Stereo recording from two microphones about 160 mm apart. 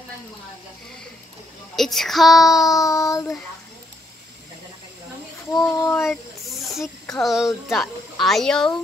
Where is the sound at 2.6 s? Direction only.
20° left (ahead or behind).